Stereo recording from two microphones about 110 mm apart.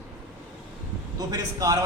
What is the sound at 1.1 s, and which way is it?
Speech, 35° right (ahead or behind).